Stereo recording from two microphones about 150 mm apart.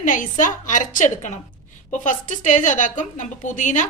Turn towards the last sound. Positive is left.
turn(degrees=55)  # may be behind; listen again after turning